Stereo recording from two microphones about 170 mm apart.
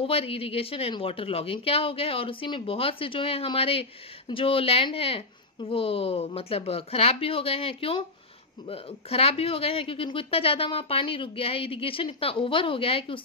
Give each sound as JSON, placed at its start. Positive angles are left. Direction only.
{"t": 0.0, "sound": "speech", "side_deg": 35}